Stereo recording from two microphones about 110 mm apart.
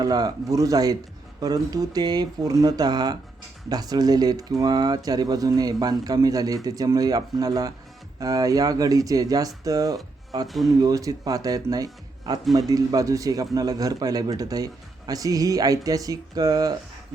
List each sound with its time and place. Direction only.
0.0 s speech: 35° right (ahead or behind)